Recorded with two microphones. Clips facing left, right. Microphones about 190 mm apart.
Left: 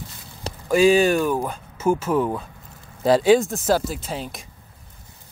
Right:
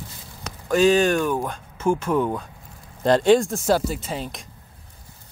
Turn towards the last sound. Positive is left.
turn(degrees=0)  # may be behind; listen again after turning